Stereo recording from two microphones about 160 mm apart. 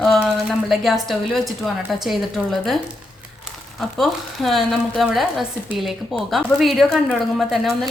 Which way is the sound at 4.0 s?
Centre (ahead or behind).